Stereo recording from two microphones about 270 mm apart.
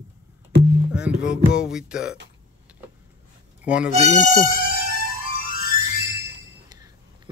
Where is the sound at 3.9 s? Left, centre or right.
Right.